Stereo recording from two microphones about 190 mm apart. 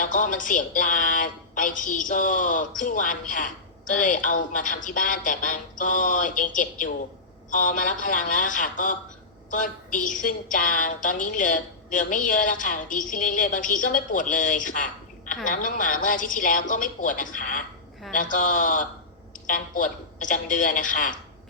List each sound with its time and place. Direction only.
0.0 s a woman's voice: 45° left (ahead or behind)